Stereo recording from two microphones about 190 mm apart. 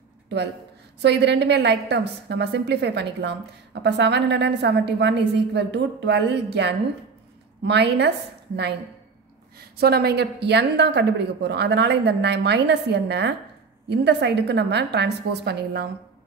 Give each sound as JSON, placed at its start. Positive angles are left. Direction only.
{"t": 1.0, "sound": "a woman's voice", "side_deg": -65}
{"t": 9.6, "sound": "a woman's voice", "side_deg": -55}